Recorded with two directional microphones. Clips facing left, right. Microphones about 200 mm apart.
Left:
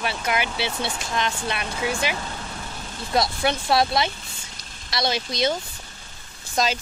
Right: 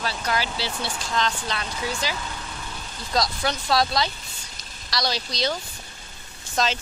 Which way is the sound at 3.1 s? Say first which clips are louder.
Left 3 dB; 25° left (ahead or behind).